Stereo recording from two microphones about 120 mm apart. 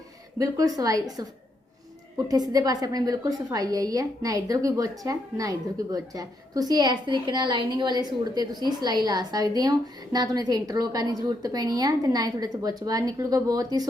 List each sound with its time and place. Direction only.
0.3 s a woman's voice: 30° right (ahead or behind)